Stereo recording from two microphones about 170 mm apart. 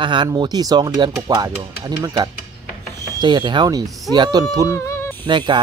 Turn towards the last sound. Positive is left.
turn(degrees=-30)  # may be behind; listen again after turning